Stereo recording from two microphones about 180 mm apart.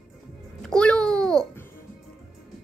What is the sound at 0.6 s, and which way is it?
Babbling, 5° left (ahead or behind).